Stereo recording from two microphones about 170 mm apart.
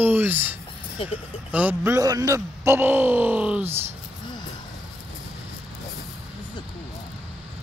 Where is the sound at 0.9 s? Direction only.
35° left (ahead or behind).